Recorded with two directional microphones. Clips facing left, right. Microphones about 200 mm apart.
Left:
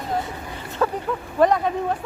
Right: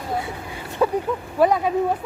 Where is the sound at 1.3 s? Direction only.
5° right (ahead or behind).